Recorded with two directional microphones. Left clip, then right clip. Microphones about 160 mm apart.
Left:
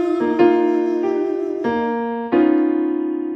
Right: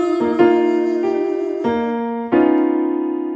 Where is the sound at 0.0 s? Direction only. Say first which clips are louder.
Right 1 dB; 35° right (ahead or behind).